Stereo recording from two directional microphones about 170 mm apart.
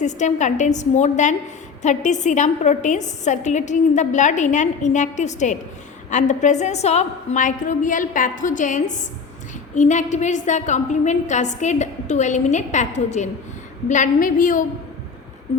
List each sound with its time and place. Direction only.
0.0 s a woman's voice: 45° left (ahead or behind)